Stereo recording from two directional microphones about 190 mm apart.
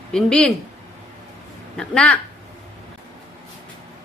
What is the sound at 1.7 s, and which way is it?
Speech, 5° left (ahead or behind).